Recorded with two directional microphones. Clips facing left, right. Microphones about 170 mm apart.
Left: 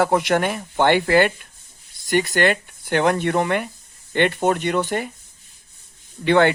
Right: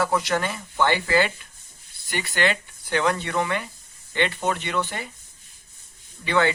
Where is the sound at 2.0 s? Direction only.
45° left (ahead or behind).